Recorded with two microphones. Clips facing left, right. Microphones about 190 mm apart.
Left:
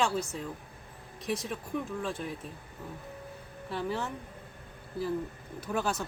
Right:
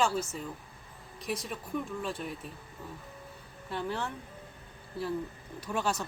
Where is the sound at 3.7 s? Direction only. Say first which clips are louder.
Left 1 dB; centre (ahead or behind).